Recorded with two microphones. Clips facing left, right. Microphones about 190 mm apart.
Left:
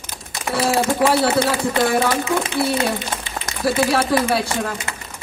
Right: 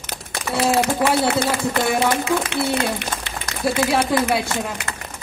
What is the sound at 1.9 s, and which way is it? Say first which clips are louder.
A woman's voice: left 1 dB; 65° right (ahead or behind).